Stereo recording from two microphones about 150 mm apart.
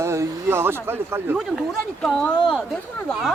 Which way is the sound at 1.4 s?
Centre (ahead or behind).